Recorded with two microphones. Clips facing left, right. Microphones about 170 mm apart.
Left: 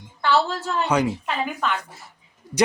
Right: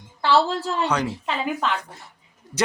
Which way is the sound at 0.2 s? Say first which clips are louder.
Right 2 dB; 30° right (ahead or behind).